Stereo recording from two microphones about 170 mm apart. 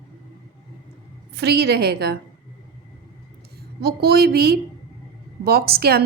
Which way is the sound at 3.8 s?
70° right (ahead or behind).